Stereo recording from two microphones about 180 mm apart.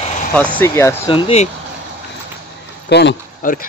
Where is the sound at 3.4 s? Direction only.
50° left (ahead or behind).